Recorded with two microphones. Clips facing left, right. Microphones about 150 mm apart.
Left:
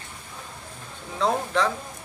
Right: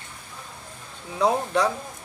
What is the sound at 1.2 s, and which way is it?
Speech, 15° right (ahead or behind).